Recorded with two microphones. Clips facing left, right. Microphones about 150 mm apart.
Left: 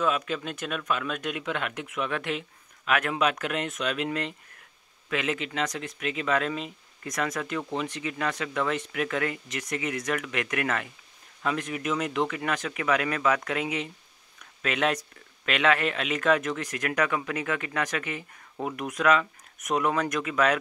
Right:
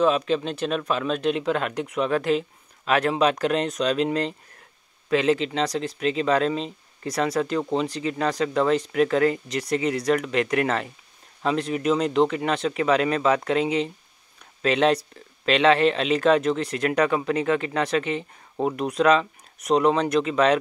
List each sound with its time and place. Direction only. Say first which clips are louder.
0.0 s speech: right 7 dB; 30° right (ahead or behind)